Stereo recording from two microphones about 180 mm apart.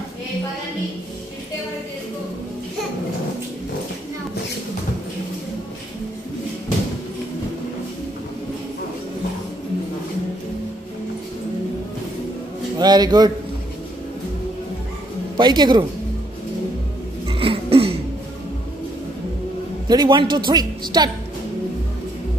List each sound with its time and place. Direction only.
12.7 s a man's voice: 20° right (ahead or behind)
15.3 s a woman's voice: 25° right (ahead or behind)
17.3 s a sound: 30° right (ahead or behind)
19.9 s a woman's voice: 25° right (ahead or behind)